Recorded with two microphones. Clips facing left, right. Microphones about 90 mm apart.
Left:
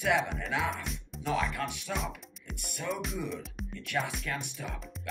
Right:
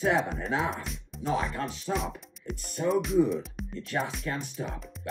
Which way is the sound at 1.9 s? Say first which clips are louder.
Right 4 dB; centre (ahead or behind).